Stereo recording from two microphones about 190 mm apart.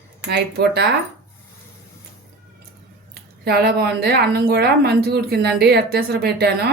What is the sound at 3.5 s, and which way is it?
Speech, 55° right (ahead or behind).